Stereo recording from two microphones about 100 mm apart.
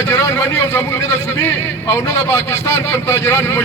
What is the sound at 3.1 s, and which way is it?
Speech, 25° left (ahead or behind).